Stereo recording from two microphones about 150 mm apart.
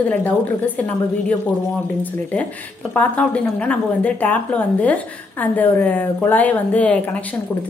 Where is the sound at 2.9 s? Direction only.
10° left (ahead or behind).